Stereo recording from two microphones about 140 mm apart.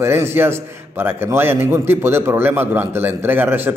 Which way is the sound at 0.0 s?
20° right (ahead or behind).